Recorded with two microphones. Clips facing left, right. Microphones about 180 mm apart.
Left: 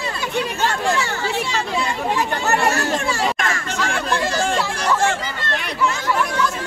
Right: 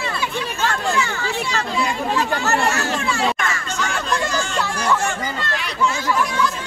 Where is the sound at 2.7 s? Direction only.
35° left (ahead or behind).